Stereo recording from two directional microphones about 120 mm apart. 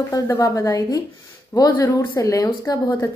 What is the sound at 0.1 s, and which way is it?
A woman's voice, 30° left (ahead or behind).